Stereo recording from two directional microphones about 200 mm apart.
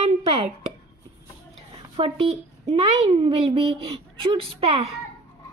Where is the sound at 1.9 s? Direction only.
30° right (ahead or behind).